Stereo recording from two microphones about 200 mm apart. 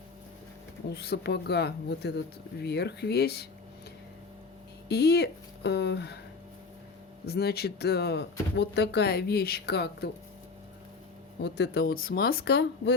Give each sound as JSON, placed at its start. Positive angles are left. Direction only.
{"t": 0.9, "sound": "speech", "side_deg": 55}
{"t": 4.9, "sound": "speech", "side_deg": 55}
{"t": 7.3, "sound": "speech", "side_deg": 55}
{"t": 11.4, "sound": "speech", "side_deg": 60}